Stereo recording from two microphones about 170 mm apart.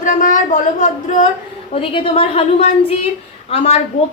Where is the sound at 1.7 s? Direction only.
35° left (ahead or behind).